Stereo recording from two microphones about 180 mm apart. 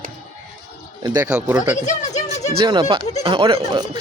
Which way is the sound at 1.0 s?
20° right (ahead or behind).